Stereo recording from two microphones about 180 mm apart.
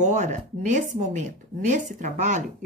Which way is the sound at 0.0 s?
40° right (ahead or behind).